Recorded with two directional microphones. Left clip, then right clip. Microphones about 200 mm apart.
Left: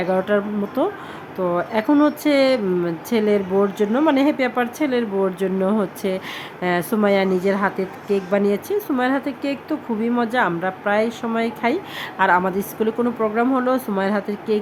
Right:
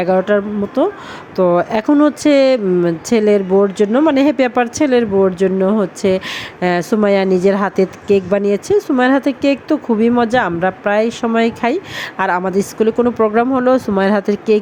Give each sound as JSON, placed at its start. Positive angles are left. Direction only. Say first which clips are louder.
{"t": 0.0, "sound": "speech", "louder": "right 6 dB", "side_deg": -25}